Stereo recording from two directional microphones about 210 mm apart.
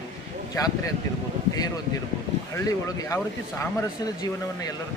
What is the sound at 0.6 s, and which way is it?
Speech, 15° left (ahead or behind).